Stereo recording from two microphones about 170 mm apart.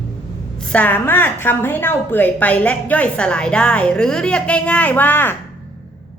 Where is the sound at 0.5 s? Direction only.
5° left (ahead or behind).